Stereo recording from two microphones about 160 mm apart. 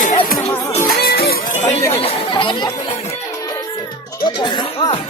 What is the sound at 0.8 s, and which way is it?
Music, 75° left (ahead or behind).